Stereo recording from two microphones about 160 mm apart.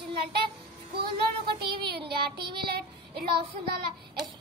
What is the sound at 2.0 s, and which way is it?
Speech, 30° right (ahead or behind).